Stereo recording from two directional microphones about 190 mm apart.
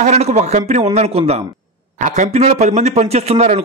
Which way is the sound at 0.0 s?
35° right (ahead or behind).